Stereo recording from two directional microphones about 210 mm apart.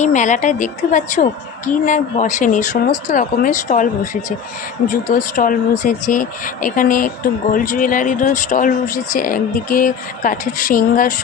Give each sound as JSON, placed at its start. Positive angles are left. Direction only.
{"t": 0.0, "sound": "a woman's voice", "side_deg": 35}